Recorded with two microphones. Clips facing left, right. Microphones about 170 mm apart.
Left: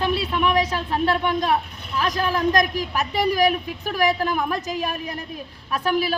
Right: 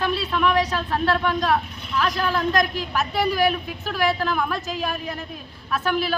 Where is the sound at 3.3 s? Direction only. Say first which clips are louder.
Left 2 dB; 40° left (ahead or behind).